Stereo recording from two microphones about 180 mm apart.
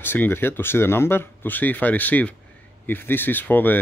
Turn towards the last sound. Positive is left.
turn(degrees=10)  # may be behind; listen again after turning